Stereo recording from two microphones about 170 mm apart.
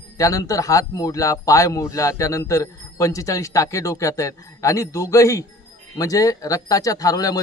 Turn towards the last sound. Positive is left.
turn(degrees=20)  # may be behind; listen again after turning